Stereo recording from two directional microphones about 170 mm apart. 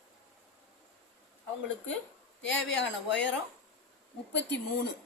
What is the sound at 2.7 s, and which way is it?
A woman's voice, 90° left.